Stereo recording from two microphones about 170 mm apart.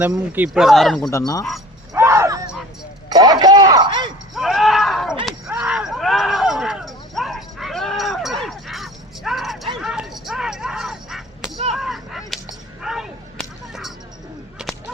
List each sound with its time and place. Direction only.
0.0 s speech: 10° right (ahead or behind)
1.1 s speech: 20° left (ahead or behind)
1.9 s a sound: 15° right (ahead or behind)
4.4 s a sound: centre (ahead or behind)
11.7 s whip: centre (ahead or behind)
14.6 s whip: centre (ahead or behind)